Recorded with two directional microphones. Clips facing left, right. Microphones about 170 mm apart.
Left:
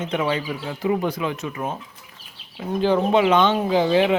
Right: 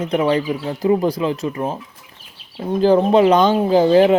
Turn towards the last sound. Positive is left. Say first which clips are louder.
# right 6 dB
turn(degrees=-40)  # may be behind; listen again after turning